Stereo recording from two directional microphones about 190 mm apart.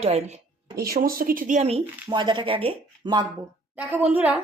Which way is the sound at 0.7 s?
50° right (ahead or behind).